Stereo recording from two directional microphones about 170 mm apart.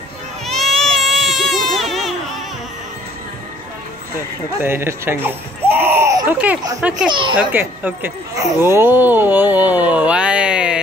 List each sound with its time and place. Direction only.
0.5 s baby cry: centre (ahead or behind)
4.6 s speech: 15° right (ahead or behind)
7.1 s a child's voice: 30° right (ahead or behind)
7.3 s speech: 10° right (ahead or behind)